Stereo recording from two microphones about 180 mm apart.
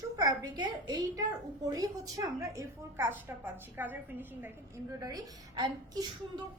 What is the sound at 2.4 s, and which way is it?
A woman's voice, 15° right (ahead or behind).